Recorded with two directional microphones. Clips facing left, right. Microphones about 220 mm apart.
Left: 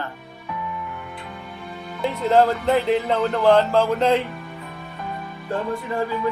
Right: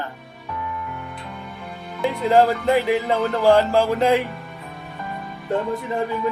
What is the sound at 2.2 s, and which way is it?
Speech, 15° right (ahead or behind).